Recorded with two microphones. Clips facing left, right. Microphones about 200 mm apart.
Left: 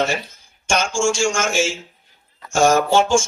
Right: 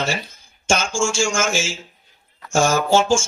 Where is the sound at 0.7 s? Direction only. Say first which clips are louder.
Left 4 dB; 30° left (ahead or behind).